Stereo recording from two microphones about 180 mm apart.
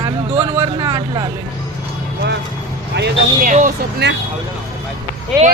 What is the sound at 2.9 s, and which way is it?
Speech, 70° right (ahead or behind).